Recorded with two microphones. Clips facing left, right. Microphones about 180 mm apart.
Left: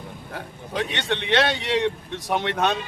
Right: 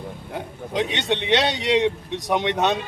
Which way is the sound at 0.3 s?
20° right (ahead or behind).